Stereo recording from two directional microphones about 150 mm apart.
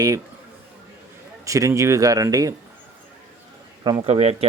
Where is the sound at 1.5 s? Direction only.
20° right (ahead or behind).